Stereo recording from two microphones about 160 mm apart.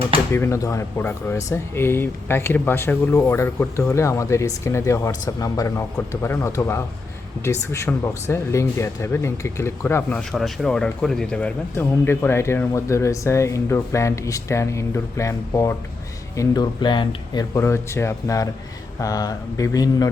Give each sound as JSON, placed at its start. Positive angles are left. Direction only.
{"t": 0.3, "sound": "speech", "side_deg": 15}
{"t": 17.6, "sound": "speech", "side_deg": 15}